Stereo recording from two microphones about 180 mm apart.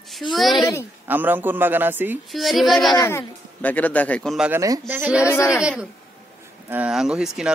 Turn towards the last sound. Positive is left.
turn(degrees=-5)  # may be behind; listen again after turning